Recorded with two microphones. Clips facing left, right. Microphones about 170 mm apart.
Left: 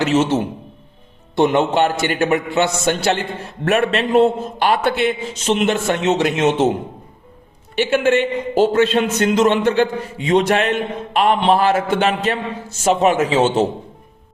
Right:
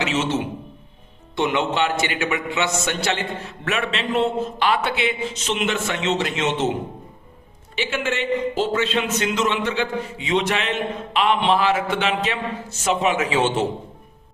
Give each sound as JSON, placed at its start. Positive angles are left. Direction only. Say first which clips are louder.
{"t": 0.0, "sound": "a man's voice", "louder": "left 7 dB", "side_deg": 45}
{"t": 1.4, "sound": "a man's voice", "louder": "left 6 dB", "side_deg": 40}
{"t": 7.8, "sound": "a man's voice", "louder": "left 9 dB", "side_deg": 55}